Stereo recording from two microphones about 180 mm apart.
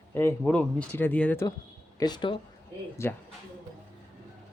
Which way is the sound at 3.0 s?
15° left (ahead or behind).